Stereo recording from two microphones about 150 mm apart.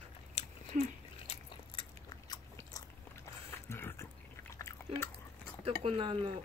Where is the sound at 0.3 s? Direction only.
45° left (ahead or behind).